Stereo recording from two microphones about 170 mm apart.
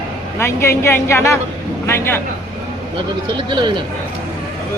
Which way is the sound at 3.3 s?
25° right (ahead or behind).